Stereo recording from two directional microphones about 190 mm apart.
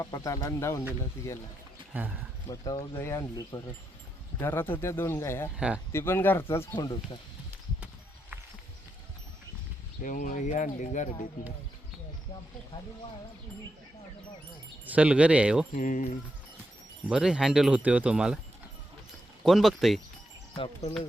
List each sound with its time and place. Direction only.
0.0 s speech: 15° left (ahead or behind)
1.9 s speech: 10° right (ahead or behind)
2.5 s speech: 20° left (ahead or behind)
5.5 s speech: 5° right (ahead or behind)
5.9 s speech: 15° left (ahead or behind)
6.7 s speech: 20° left (ahead or behind)
10.0 s speech: 40° left (ahead or behind)
14.8 s speech: 5° right (ahead or behind)
15.7 s speech: 45° left (ahead or behind)
17.1 s speech: 5° right (ahead or behind)
19.5 s speech: centre (ahead or behind)